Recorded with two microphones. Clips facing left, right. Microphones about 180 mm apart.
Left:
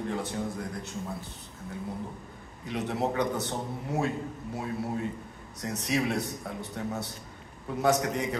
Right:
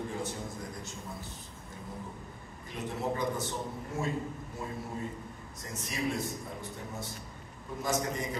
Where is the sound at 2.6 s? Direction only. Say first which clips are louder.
Left 5 dB; 70° left (ahead or behind).